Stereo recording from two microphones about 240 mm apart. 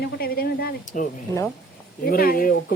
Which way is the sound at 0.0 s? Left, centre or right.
Left.